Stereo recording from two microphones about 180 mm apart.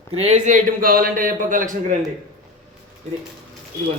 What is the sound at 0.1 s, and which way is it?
A man's voice, 35° right (ahead or behind).